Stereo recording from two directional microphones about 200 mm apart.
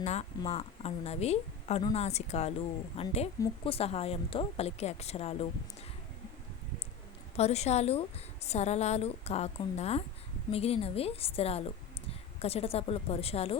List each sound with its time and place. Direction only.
0.0 s a woman's voice: 35° left (ahead or behind)
7.3 s a woman's voice: 30° left (ahead or behind)